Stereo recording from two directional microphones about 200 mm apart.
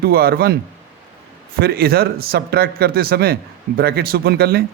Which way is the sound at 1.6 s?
50° right (ahead or behind).